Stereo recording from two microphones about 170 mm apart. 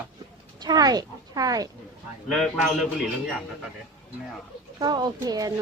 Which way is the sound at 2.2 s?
5° left (ahead or behind).